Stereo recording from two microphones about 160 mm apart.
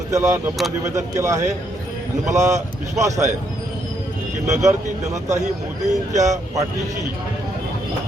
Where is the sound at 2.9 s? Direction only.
20° right (ahead or behind).